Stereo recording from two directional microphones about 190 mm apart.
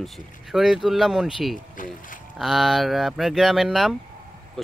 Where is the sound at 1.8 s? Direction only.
45° left (ahead or behind).